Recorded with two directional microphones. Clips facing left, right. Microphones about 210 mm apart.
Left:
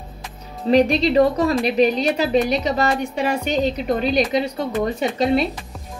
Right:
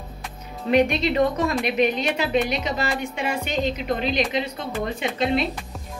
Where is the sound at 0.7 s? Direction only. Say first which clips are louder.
Left 4 dB; 35° left (ahead or behind).